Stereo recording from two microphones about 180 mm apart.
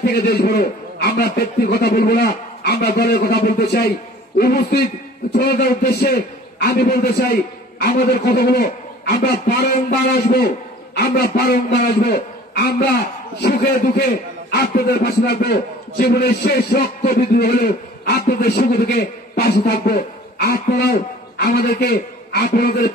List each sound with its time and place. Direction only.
0.0 s a man's voice: 60° left (ahead or behind)